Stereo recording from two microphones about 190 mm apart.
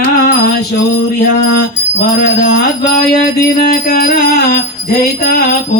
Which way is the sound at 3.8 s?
50° left (ahead or behind).